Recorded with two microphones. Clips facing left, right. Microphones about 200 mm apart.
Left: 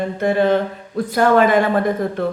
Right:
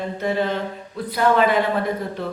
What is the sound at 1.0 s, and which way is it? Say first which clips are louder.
A man's voice: left 4 dB; 45° left (ahead or behind).